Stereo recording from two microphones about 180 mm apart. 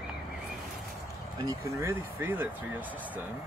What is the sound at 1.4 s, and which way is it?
Speech, 15° right (ahead or behind).